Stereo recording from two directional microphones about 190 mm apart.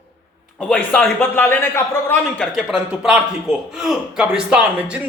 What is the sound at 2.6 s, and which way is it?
Speech, 5° right (ahead or behind).